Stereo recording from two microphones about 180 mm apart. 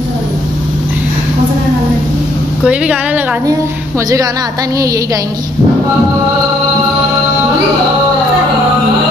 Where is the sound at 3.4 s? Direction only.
20° right (ahead or behind).